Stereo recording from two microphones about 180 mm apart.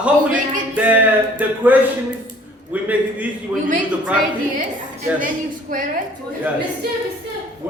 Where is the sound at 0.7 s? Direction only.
10° right (ahead or behind).